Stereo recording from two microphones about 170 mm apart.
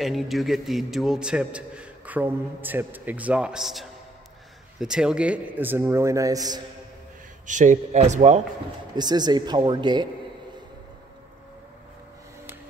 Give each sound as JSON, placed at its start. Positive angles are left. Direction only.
{"t": 0.0, "sound": "a man's voice", "side_deg": 0}
{"t": 7.4, "sound": "speech", "side_deg": -45}
{"t": 8.9, "sound": "speech", "side_deg": -25}